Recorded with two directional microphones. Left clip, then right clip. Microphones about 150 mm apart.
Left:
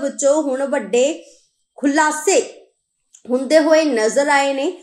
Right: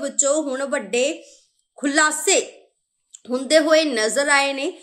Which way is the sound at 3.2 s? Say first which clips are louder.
Left 3 dB; 45° right (ahead or behind).